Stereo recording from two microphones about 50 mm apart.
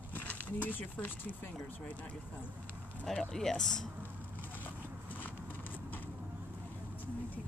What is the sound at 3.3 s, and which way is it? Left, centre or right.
Speech, centre.